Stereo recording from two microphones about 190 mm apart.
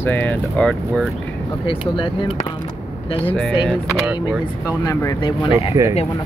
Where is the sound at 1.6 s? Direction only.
25° left (ahead or behind).